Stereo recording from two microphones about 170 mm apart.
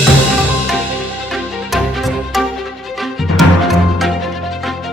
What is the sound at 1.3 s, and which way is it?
Music, centre (ahead or behind).